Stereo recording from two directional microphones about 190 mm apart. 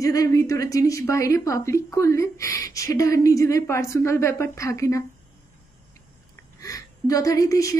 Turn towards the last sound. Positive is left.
turn(degrees=15)  # may be behind; listen again after turning